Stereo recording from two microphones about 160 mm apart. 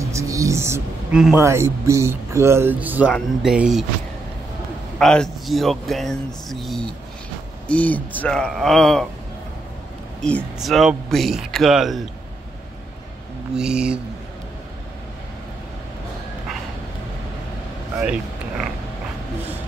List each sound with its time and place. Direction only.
0.0 s music: 20° right (ahead or behind)
1.1 s speech: 5° right (ahead or behind)
1.4 s speech: 15° right (ahead or behind)
4.9 s speech: 5° left (ahead or behind)
10.2 s speech: 5° left (ahead or behind)
13.6 s speech: 5° right (ahead or behind)
18.0 s a sound: 5° right (ahead or behind)